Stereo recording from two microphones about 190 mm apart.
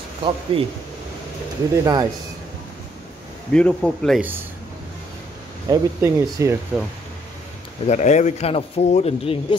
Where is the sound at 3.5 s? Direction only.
5° left (ahead or behind).